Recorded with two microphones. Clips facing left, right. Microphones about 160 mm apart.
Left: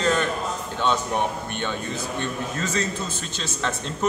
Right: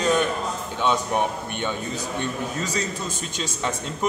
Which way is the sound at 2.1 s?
15° right (ahead or behind).